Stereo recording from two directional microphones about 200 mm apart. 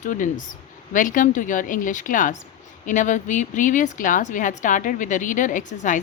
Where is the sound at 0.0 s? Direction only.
40° left (ahead or behind).